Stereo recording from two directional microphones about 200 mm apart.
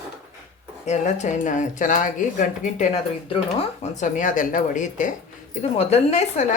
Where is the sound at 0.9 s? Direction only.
35° left (ahead or behind).